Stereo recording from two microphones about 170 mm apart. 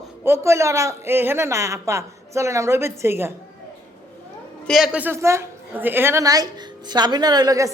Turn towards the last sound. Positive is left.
turn(degrees=-20)  # may be behind; listen again after turning